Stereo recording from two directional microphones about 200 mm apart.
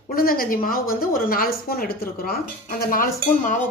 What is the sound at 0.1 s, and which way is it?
A woman's voice, 45° left (ahead or behind).